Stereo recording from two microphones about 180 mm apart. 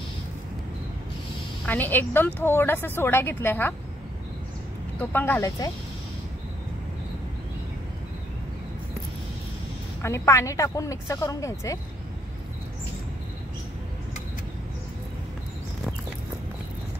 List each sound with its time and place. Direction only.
1.7 s speech: 10° left (ahead or behind)
5.1 s speech: 10° left (ahead or behind)
10.0 s speech: 15° left (ahead or behind)